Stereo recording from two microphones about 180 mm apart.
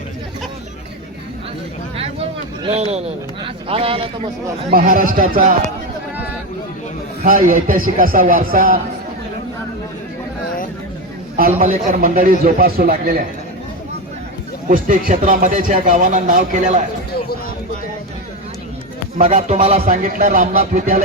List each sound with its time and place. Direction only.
2.6 s speech: 35° right (ahead or behind)
4.7 s speech: 55° right (ahead or behind)
7.2 s speech: 50° right (ahead or behind)
11.3 s speech: 50° right (ahead or behind)
14.7 s speech: 50° right (ahead or behind)
19.1 s speech: 40° right (ahead or behind)
19.9 s speech: 45° right (ahead or behind)